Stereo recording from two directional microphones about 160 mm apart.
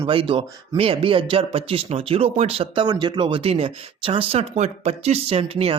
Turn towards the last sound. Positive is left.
turn(degrees=-35)  # may be behind; listen again after turning